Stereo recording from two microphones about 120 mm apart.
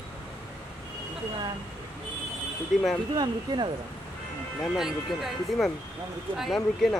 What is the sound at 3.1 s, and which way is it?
Speech, 35° right (ahead or behind).